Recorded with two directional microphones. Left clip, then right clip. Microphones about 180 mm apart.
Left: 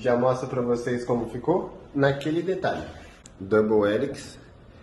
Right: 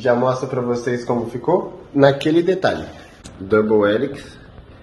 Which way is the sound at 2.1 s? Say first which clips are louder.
Right 10 dB; 55° right (ahead or behind).